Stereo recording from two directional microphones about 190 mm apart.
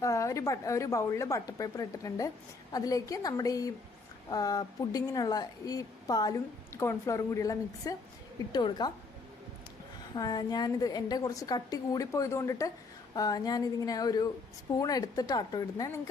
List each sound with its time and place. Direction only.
0.0 s a woman's voice: 15° left (ahead or behind)
10.2 s a woman's voice: 20° left (ahead or behind)